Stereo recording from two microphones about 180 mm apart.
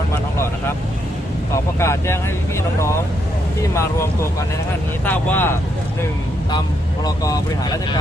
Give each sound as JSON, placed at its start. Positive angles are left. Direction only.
{"t": 1.8, "sound": "speech", "side_deg": 15}
{"t": 3.6, "sound": "speech", "side_deg": 15}
{"t": 7.0, "sound": "speech", "side_deg": 20}